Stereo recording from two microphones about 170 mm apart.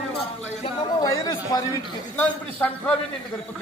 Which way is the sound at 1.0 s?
20° left (ahead or behind).